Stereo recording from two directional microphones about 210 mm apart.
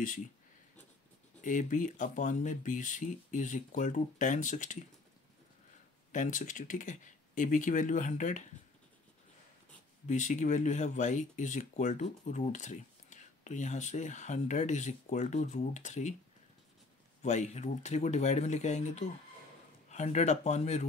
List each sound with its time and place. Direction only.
1.4 s speech: 35° left (ahead or behind)
6.1 s speech: 40° left (ahead or behind)
10.0 s speech: 35° left (ahead or behind)
17.2 s speech: 35° left (ahead or behind)